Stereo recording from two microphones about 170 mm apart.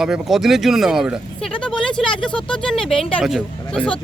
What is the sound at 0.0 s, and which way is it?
Speech, centre (ahead or behind).